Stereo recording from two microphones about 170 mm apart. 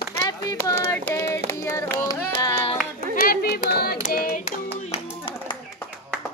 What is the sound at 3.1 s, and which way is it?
Hands, 60° left (ahead or behind).